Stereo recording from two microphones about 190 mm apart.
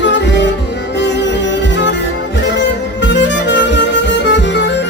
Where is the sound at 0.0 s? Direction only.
70° left (ahead or behind).